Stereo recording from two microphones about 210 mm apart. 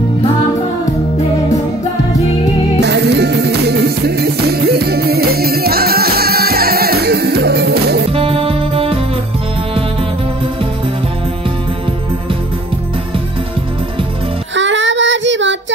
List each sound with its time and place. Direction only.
2.8 s music: 55° right (ahead or behind)
8.1 s music: 25° right (ahead or behind)
14.5 s child singing: 60° right (ahead or behind)